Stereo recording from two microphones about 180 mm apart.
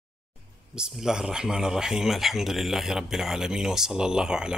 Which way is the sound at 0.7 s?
5° right (ahead or behind).